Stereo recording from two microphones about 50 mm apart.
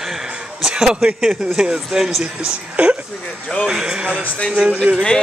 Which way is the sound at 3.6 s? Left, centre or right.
Centre.